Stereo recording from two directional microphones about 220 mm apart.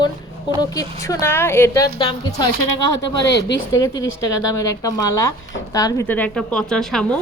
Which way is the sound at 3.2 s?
50° left (ahead or behind).